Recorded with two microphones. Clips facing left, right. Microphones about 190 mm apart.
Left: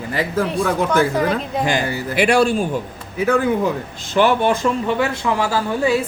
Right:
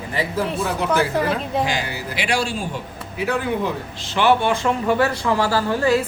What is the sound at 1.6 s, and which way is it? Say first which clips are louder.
A man's voice: left 5 dB; 50° left (ahead or behind).